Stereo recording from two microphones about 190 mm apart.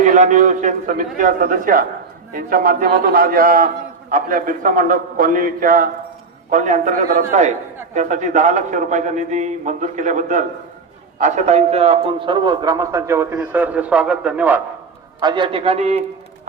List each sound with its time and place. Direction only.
0.0 s a man's voice: 40° right (ahead or behind); by 14.6 s 5° right (ahead or behind)
15.2 s a man's voice: 25° right (ahead or behind)